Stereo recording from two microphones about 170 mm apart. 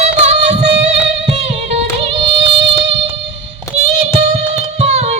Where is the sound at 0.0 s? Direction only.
40° right (ahead or behind).